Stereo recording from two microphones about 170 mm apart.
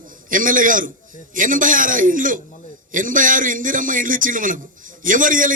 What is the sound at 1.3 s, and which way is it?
A man's voice, 50° right (ahead or behind).